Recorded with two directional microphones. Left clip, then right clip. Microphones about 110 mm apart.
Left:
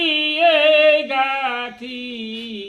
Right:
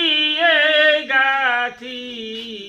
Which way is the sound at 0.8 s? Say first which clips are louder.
Even; 35° left (ahead or behind).